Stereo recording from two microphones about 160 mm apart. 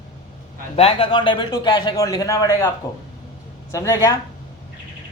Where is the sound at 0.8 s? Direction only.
35° left (ahead or behind).